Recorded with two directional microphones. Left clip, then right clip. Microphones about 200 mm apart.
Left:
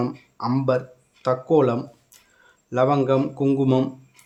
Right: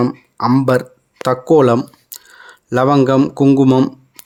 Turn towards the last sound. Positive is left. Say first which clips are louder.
# right 9 dB
turn(degrees=-40)  # may be behind; listen again after turning